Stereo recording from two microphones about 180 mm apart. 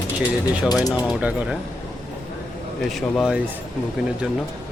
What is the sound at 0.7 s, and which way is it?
Speech, 20° left (ahead or behind).